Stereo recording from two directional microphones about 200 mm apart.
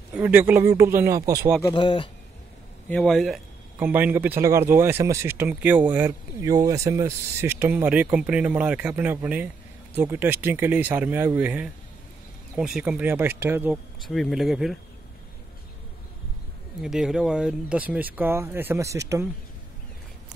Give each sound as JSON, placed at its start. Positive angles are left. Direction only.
{"t": 0.1, "sound": "speech", "side_deg": -10}
{"t": 1.7, "sound": "speech", "side_deg": 25}
{"t": 2.9, "sound": "speech", "side_deg": 5}
{"t": 16.8, "sound": "speech", "side_deg": -5}